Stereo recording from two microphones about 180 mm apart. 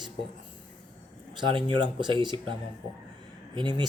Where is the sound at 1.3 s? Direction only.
25° right (ahead or behind).